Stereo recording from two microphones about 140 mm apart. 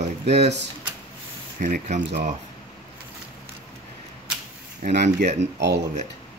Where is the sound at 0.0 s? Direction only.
55° right (ahead or behind).